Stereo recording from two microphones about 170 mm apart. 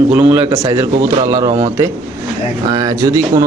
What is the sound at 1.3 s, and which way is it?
Speech, 20° right (ahead or behind).